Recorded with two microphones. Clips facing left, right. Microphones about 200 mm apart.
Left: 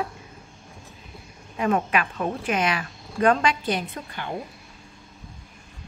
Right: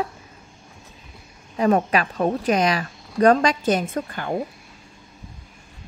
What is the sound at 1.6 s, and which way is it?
A woman's voice, 35° right (ahead or behind).